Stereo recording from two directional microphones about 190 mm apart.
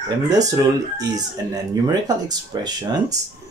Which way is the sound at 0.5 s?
20° right (ahead or behind).